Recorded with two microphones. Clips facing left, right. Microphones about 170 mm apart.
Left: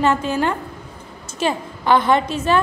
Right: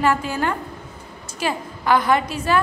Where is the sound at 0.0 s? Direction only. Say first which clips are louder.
Left 2 dB; 25° left (ahead or behind).